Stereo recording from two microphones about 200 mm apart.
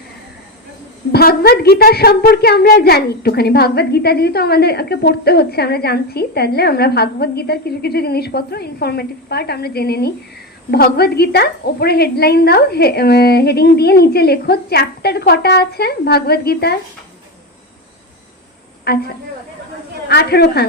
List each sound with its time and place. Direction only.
1.1 s a woman's voice: 50° left (ahead or behind)
18.9 s a woman's voice: 50° left (ahead or behind)
20.1 s a woman's voice: 55° left (ahead or behind)